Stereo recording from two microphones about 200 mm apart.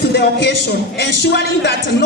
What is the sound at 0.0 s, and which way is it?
A man's voice, 55° left (ahead or behind).